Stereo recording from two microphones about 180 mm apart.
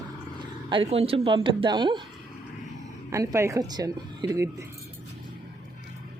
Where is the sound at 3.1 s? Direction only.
15° right (ahead or behind).